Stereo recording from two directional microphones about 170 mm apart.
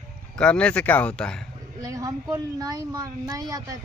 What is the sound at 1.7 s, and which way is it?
Speech, 20° right (ahead or behind).